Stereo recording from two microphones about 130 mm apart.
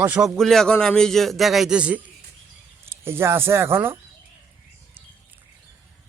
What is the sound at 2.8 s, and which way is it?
Speech, 20° right (ahead or behind).